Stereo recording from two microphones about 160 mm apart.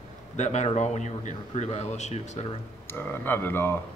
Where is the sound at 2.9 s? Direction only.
15° left (ahead or behind).